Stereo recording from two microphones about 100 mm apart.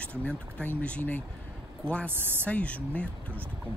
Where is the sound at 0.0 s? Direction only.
15° left (ahead or behind).